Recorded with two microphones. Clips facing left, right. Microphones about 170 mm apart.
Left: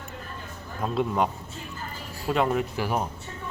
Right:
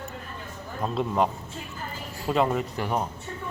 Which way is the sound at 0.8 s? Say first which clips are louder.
Even; centre (ahead or behind).